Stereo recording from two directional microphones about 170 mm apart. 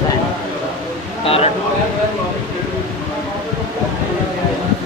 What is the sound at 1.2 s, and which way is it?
Speech, 35° left (ahead or behind).